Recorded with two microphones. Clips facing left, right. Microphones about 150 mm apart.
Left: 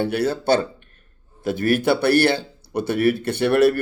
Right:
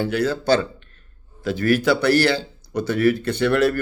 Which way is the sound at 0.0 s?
55° left (ahead or behind).